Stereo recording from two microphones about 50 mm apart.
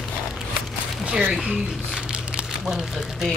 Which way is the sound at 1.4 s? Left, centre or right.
Centre.